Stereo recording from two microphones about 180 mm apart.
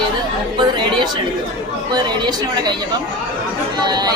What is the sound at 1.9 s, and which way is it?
Speech, 20° right (ahead or behind).